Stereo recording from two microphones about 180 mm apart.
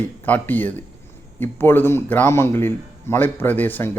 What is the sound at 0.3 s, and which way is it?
A man's voice, 10° left (ahead or behind).